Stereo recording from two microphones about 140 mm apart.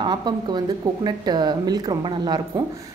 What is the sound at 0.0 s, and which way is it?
A woman's voice, 30° right (ahead or behind).